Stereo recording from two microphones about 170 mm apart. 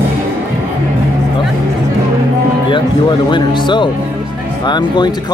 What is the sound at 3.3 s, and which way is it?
Speech, 25° left (ahead or behind).